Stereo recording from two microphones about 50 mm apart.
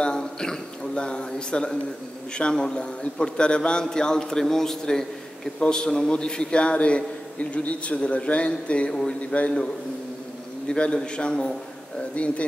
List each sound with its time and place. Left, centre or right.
0.0 s a man's voice: centre
10.7 s a man's voice: centre